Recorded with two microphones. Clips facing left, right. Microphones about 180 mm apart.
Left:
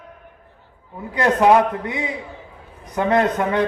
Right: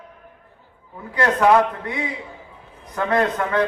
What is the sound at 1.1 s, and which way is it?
A man's voice, 20° left (ahead or behind).